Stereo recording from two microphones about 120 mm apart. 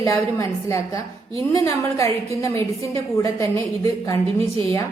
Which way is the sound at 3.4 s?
25° left (ahead or behind).